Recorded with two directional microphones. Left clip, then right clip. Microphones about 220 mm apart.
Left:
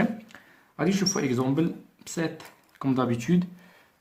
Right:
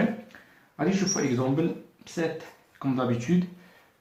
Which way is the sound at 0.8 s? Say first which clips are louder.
Even; 35° left (ahead or behind).